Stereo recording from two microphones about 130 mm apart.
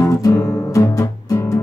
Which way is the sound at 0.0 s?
25° left (ahead or behind).